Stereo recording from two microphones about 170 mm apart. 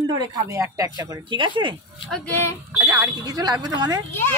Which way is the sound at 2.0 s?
10° left (ahead or behind).